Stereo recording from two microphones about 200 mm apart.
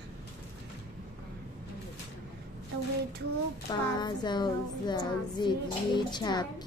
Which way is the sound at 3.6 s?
20° left (ahead or behind).